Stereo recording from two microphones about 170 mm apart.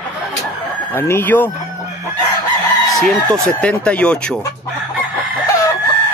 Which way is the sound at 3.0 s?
Centre (ahead or behind).